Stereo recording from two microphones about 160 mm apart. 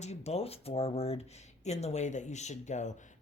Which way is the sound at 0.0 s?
45° left (ahead or behind).